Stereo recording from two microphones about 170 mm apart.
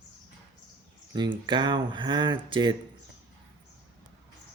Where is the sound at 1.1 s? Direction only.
25° right (ahead or behind).